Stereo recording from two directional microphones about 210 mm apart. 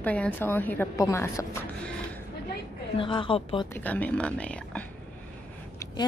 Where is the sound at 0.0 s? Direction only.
5° left (ahead or behind).